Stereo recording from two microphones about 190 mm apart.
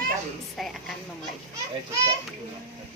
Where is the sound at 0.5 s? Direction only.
Centre (ahead or behind).